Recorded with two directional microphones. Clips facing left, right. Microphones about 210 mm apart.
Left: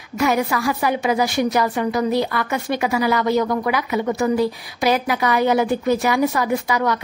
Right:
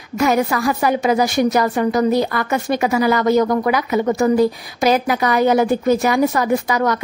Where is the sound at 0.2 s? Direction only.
45° right (ahead or behind).